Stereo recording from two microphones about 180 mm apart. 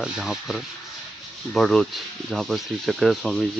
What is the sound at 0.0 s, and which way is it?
Speech, centre (ahead or behind).